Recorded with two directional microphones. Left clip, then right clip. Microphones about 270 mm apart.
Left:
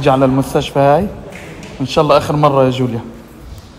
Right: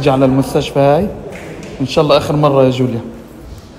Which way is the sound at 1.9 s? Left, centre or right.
Left.